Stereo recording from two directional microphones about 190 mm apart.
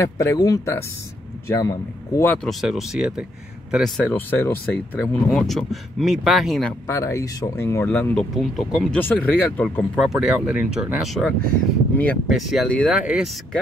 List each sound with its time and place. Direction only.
0.0 s speech: 15° left (ahead or behind); by 6.7 s centre (ahead or behind)
6.9 s speech: 15° left (ahead or behind)
9.9 s speech: 5° right (ahead or behind)